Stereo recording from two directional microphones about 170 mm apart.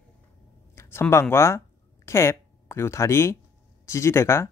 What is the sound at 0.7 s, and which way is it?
Speech, 15° left (ahead or behind).